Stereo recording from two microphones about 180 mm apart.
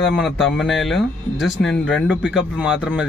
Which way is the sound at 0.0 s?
Centre (ahead or behind).